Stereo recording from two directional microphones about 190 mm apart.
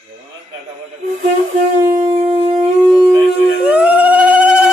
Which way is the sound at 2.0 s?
35° right (ahead or behind).